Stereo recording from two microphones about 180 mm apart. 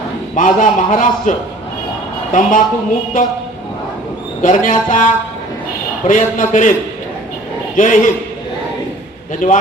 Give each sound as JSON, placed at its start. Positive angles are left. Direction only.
{"t": 0.3, "sound": "a man's voice", "side_deg": 45}
{"t": 4.4, "sound": "a man's voice", "side_deg": 45}
{"t": 6.1, "sound": "a man's voice", "side_deg": 45}
{"t": 7.8, "sound": "a man's voice", "side_deg": 45}
{"t": 9.4, "sound": "a man's voice", "side_deg": 45}